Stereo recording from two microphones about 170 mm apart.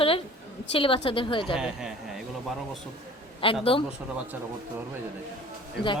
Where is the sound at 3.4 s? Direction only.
30° left (ahead or behind).